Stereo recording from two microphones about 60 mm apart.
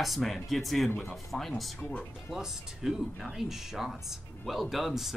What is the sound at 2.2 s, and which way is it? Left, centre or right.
Speech, centre.